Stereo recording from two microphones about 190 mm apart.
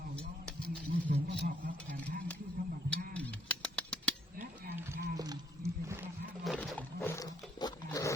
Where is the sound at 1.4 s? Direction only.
45° right (ahead or behind).